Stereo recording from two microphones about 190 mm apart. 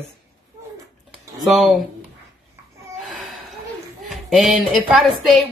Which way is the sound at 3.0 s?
Centre (ahead or behind).